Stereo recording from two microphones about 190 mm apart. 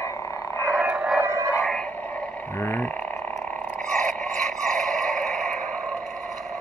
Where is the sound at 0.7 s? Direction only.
5° right (ahead or behind).